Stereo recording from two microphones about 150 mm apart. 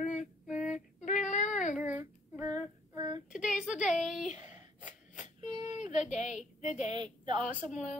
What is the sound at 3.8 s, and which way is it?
Speech, 55° left (ahead or behind).